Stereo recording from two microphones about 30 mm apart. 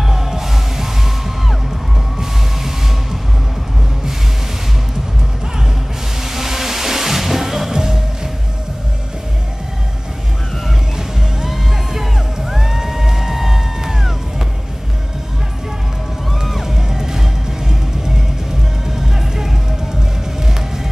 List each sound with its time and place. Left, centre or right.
0.1 s music: centre
2.1 s music: centre
6.2 s music: centre
11.0 s music: centre
16.6 s music: centre
18.9 s music: centre